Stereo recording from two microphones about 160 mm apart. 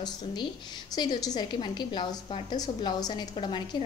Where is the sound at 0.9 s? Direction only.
25° left (ahead or behind).